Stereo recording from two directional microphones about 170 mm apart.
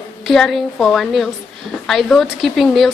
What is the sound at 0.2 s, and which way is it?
A woman's voice, centre (ahead or behind).